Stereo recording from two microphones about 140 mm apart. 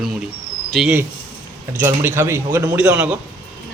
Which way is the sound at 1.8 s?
20° right (ahead or behind).